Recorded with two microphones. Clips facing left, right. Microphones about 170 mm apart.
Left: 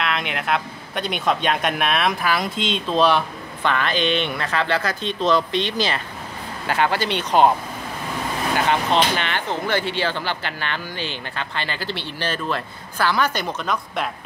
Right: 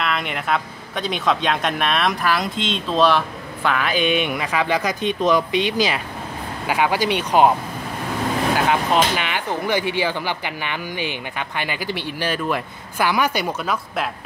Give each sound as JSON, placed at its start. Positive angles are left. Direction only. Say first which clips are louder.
{"t": 0.0, "sound": "speech", "louder": "right 1 dB", "side_deg": 0}
{"t": 8.5, "sound": "speech", "louder": "left 1 dB", "side_deg": -5}